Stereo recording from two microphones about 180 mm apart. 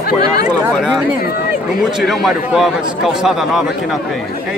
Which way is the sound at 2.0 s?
Centre (ahead or behind).